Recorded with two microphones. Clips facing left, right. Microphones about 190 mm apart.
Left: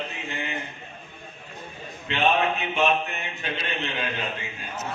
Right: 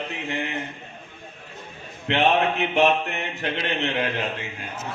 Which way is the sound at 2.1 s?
65° right (ahead or behind).